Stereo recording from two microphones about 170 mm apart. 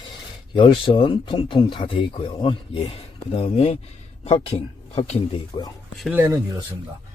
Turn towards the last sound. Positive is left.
turn(degrees=-10)  # may be behind; listen again after turning